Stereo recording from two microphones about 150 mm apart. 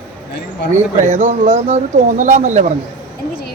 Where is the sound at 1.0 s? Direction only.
55° right (ahead or behind).